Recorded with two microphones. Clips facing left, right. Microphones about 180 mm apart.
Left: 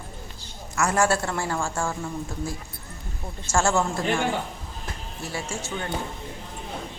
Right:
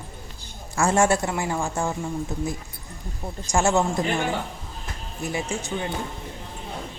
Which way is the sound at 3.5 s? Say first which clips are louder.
Right 2 dB; 20° right (ahead or behind).